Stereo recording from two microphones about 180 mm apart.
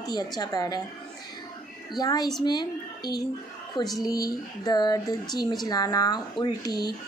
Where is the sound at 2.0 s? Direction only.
20° left (ahead or behind).